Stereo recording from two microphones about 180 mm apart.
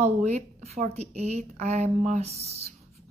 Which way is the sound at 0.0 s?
40° right (ahead or behind).